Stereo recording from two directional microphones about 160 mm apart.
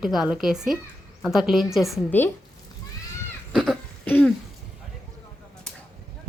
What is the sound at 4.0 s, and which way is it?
Throat clearing, 10° left (ahead or behind).